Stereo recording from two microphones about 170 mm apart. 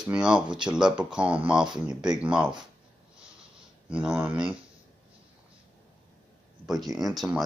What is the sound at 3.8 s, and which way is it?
Speech, 5° right (ahead or behind).